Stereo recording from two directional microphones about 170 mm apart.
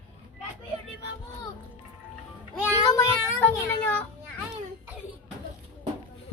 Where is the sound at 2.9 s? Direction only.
15° left (ahead or behind).